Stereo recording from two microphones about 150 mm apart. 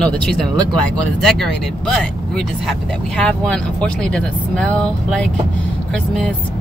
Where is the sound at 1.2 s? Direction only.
5° left (ahead or behind).